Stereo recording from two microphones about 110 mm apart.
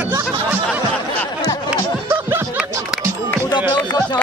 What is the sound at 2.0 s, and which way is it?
Snicker, 20° right (ahead or behind).